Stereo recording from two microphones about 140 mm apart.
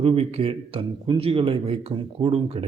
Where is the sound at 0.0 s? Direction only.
45° right (ahead or behind).